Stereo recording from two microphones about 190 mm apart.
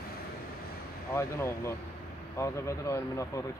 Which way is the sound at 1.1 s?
15° left (ahead or behind).